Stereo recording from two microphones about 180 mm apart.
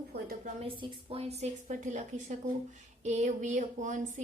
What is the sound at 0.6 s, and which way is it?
A woman's voice, 30° right (ahead or behind).